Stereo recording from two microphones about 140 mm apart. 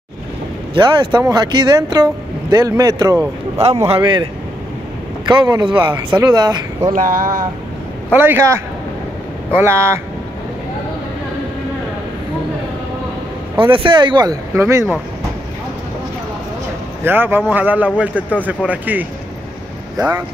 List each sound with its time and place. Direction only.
0.7 s speech: 35° right (ahead or behind)
6.9 s a sound: 80° right
8.1 s speech: 15° right (ahead or behind)
13.6 s speech: 35° right (ahead or behind); by 15.0 s 20° right (ahead or behind)
17.0 s speech: 15° right (ahead or behind)
20.0 s speech: 30° right (ahead or behind)